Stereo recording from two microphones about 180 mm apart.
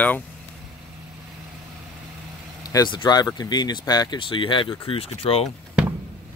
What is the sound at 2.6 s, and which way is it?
Speech, 20° left (ahead or behind).